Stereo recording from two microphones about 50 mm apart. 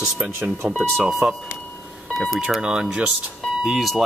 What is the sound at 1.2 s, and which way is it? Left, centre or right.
Speech, centre.